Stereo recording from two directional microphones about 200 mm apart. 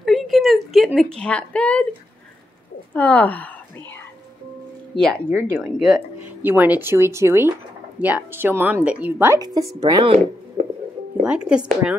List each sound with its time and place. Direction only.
0.0 s a sound: centre (ahead or behind)
2.9 s speech: 5° left (ahead or behind)
4.9 s speech: 5° left (ahead or behind); by 10.1 s 20° right (ahead or behind)
11.2 s speech: 5° right (ahead or behind)